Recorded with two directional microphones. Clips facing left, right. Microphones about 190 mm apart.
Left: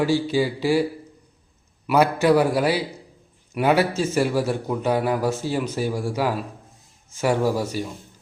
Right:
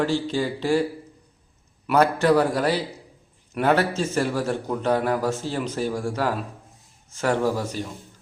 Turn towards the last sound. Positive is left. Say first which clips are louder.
# left 2 dB
turn(degrees=10)  # may be behind; listen again after turning